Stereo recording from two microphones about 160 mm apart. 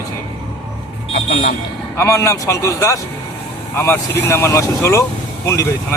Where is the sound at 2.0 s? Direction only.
15° left (ahead or behind).